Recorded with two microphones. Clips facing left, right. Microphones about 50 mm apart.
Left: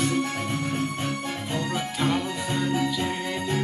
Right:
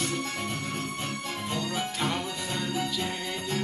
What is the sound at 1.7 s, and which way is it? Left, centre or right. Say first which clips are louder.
Music: left 6 dB; centre.